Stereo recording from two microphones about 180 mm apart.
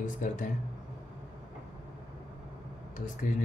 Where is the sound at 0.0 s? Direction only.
45° left (ahead or behind).